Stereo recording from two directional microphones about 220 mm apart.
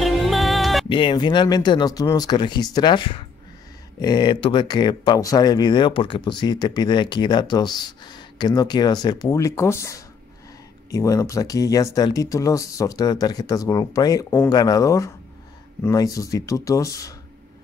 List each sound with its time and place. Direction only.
0.0 s music: centre (ahead or behind)
0.8 s speech: 20° left (ahead or behind)